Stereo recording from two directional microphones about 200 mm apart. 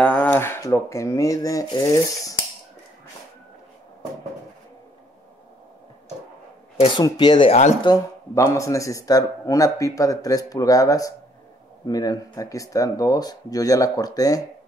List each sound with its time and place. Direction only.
0.0 s speech: 5° left (ahead or behind)
6.8 s speech: 20° left (ahead or behind)
7.9 s a man's voice: 15° left (ahead or behind)